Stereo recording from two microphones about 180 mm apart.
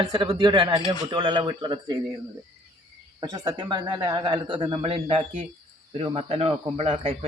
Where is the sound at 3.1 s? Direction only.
20° right (ahead or behind).